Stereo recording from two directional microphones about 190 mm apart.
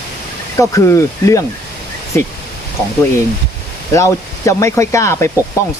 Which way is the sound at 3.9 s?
15° left (ahead or behind).